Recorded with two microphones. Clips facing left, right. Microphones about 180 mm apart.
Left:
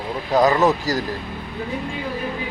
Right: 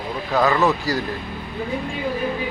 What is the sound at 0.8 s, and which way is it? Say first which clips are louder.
Speech: left 1 dB; 40° left (ahead or behind).